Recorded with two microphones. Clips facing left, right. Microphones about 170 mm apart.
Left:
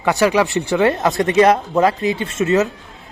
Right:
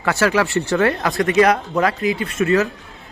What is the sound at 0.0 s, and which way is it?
Speech, 15° left (ahead or behind).